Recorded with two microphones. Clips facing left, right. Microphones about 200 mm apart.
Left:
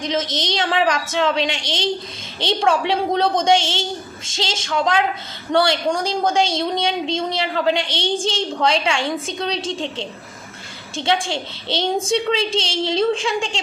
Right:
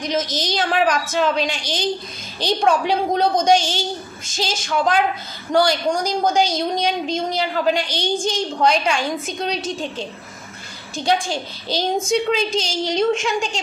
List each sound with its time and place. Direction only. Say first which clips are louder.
0.0 s a woman's voice: even; 25° left (ahead or behind)